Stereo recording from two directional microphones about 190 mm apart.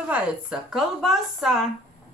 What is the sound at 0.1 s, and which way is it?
A woman's voice, 5° right (ahead or behind).